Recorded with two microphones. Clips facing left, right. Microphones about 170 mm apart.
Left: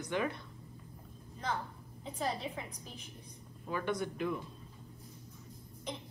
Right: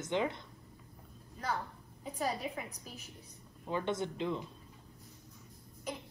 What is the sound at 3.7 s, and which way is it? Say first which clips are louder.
Speech: right 1 dB; 20° right (ahead or behind).